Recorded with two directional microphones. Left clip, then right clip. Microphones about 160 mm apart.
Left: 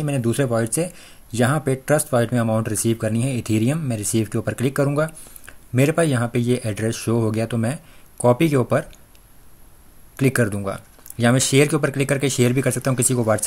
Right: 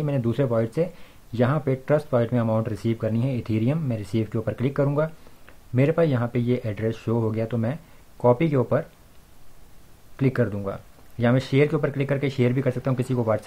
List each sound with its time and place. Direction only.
0.0 s speech: 15° left (ahead or behind)
10.1 s speech: 25° left (ahead or behind)